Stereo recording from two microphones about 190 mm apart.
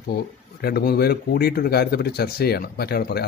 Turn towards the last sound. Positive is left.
turn(degrees=55)  # may be behind; listen again after turning